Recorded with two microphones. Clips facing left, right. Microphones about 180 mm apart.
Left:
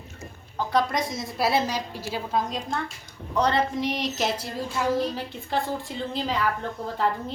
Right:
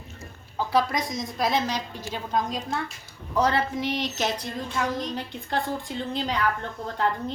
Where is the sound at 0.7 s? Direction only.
Centre (ahead or behind).